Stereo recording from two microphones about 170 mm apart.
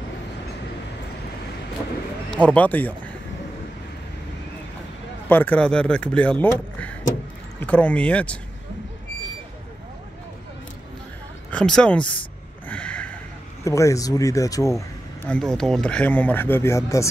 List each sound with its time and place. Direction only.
2.3 s speech: 10° left (ahead or behind)
5.3 s speech: 10° left (ahead or behind)
11.5 s speech: 5° left (ahead or behind)
12.6 s a sound: 5° left (ahead or behind)
13.7 s speech: 20° left (ahead or behind)
15.2 s speech: 5° left (ahead or behind)